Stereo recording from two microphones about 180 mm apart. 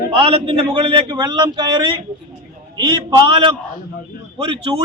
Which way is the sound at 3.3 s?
30° right (ahead or behind).